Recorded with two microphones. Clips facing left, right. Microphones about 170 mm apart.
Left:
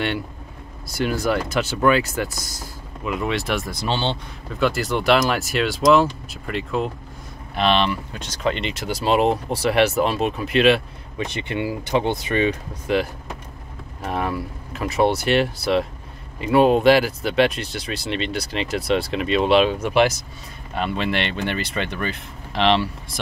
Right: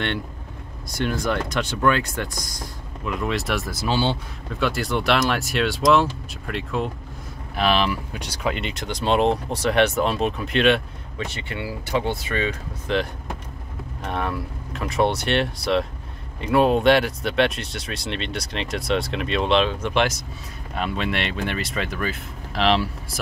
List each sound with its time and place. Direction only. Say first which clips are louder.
0.8 s speech: left 2 dB; 5° left (ahead or behind)
11.1 s speech: left 5 dB; 20° left (ahead or behind); by 23.2 s centre (ahead or behind)